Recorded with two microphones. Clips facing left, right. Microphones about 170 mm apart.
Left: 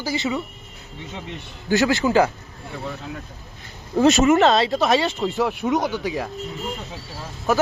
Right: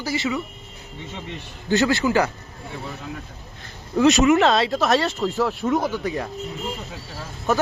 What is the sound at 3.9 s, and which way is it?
Speech, 35° left (ahead or behind).